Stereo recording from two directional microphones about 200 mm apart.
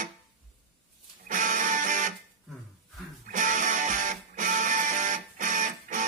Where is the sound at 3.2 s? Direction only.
40° right (ahead or behind).